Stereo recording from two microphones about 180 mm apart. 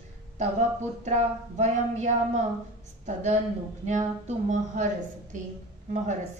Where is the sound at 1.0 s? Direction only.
40° right (ahead or behind).